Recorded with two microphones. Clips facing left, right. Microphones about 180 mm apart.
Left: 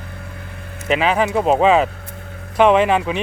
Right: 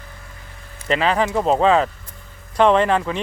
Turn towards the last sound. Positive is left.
turn(degrees=15)  # may be behind; listen again after turning